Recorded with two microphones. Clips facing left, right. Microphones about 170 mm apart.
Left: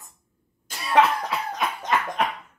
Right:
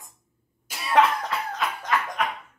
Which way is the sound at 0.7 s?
5° right (ahead or behind).